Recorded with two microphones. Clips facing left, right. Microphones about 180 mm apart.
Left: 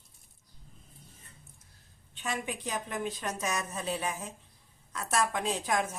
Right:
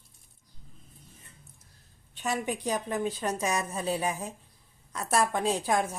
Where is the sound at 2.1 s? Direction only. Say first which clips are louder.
Right 5 dB; 40° right (ahead or behind).